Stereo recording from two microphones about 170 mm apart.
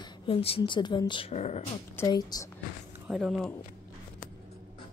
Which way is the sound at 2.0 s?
25° left (ahead or behind).